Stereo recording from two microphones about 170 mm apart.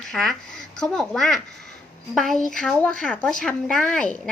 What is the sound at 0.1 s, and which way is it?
A woman's voice, 5° left (ahead or behind).